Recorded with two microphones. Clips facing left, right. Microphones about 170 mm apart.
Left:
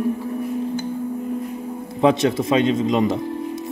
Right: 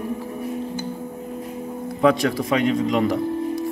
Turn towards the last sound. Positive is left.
turn(degrees=20)  # may be behind; listen again after turning